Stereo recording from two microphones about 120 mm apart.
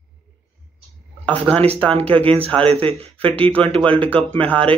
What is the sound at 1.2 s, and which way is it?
Speech, 10° left (ahead or behind).